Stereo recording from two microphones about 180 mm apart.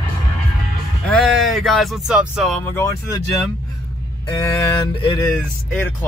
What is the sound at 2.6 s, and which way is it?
Speech, 15° left (ahead or behind).